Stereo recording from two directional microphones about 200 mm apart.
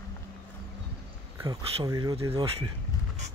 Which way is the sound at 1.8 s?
20° right (ahead or behind).